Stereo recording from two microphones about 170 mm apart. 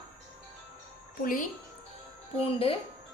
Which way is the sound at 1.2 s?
55° left (ahead or behind).